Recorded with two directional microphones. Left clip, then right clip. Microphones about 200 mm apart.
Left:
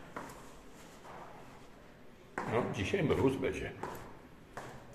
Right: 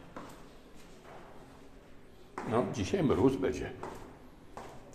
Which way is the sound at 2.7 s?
30° right (ahead or behind).